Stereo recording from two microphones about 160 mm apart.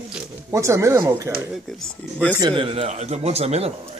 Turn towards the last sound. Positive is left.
turn(degrees=-40)  # may be behind; listen again after turning